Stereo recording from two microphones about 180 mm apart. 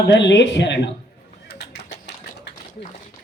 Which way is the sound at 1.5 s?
70° left (ahead or behind).